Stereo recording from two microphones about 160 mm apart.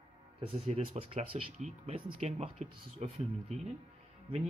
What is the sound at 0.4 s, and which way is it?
Speech, 35° right (ahead or behind).